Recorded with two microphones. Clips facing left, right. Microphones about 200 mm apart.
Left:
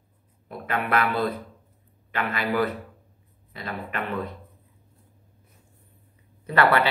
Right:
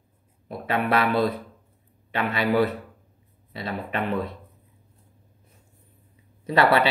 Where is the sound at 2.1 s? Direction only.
25° right (ahead or behind).